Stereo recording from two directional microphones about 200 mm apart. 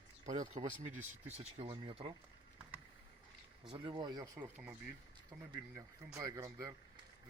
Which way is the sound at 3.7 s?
25° right (ahead or behind).